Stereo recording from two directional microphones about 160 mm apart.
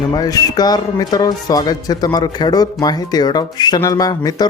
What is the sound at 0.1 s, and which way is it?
Speech, 25° left (ahead or behind).